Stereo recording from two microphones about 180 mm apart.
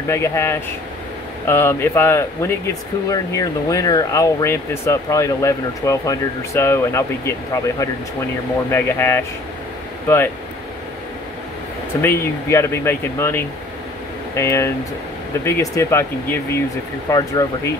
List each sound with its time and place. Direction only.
0.1 s speech: 15° left (ahead or behind)
12.0 s speech: 10° left (ahead or behind)